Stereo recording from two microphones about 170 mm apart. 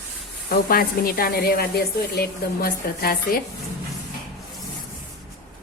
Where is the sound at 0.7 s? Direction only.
60° left (ahead or behind).